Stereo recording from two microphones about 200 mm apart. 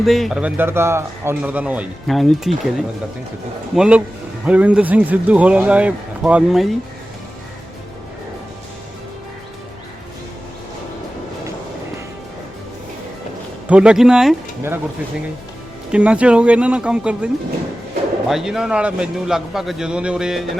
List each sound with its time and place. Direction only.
0.0 s a man's voice: centre (ahead or behind)
13.7 s a man's voice: 5° right (ahead or behind)
15.9 s a man's voice: 5° right (ahead or behind)
18.3 s a man's voice: centre (ahead or behind)